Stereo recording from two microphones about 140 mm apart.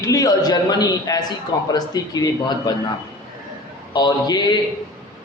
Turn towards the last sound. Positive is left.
turn(degrees=30)  # may be behind; listen again after turning